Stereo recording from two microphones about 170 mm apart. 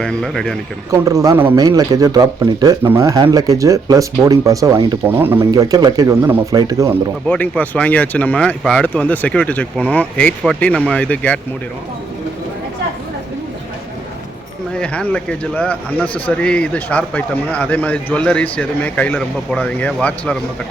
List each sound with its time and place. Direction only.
0.0 s speech: 5° left (ahead or behind)
0.9 s speech: 20° right (ahead or behind)
7.3 s speech: 10° left (ahead or behind)
14.8 s speech: 5° left (ahead or behind)